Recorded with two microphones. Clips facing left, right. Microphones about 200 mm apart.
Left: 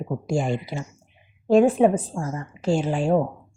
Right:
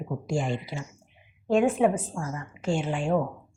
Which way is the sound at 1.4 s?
35° left (ahead or behind).